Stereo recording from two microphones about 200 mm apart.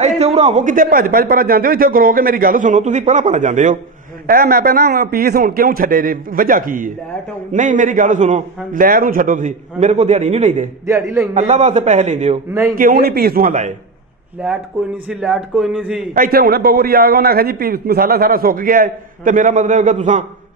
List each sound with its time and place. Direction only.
0.0 s a man's voice: 30° right (ahead or behind)
10.9 s a man's voice: 15° right (ahead or behind)
11.3 s a man's voice: 35° right (ahead or behind)
15.0 s a man's voice: 5° right (ahead or behind)
16.1 s a man's voice: 45° right (ahead or behind)